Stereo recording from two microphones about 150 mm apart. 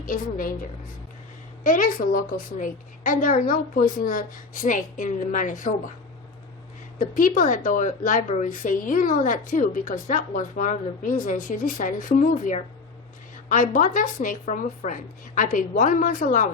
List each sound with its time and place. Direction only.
0.0 s a woman's voice: 70° left (ahead or behind)
1.6 s a woman's voice: 65° left (ahead or behind)
7.0 s a woman's voice: 65° left (ahead or behind)